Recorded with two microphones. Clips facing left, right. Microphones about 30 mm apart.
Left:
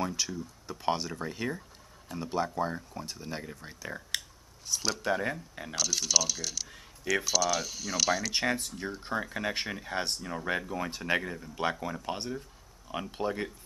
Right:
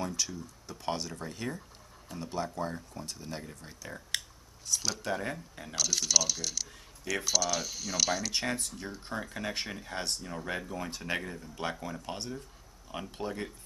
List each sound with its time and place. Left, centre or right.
0.0 s speech: centre